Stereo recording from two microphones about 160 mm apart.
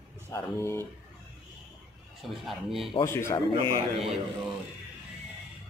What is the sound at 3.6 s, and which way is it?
Speech, 35° right (ahead or behind).